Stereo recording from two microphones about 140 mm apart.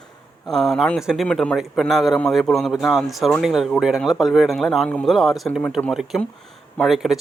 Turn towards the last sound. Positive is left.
turn(degrees=0)  # may be behind; listen again after turning